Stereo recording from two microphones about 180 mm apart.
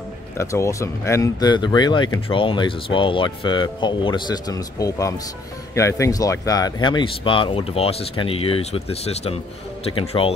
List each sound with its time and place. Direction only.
0.4 s speech: 15° left (ahead or behind); by 10.3 s 30° left (ahead or behind)